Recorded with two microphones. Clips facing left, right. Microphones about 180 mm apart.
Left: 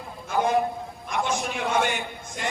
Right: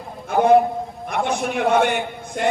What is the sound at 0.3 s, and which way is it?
A man's voice, 55° right (ahead or behind).